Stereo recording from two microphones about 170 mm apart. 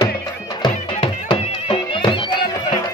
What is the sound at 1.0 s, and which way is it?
Music, 30° left (ahead or behind).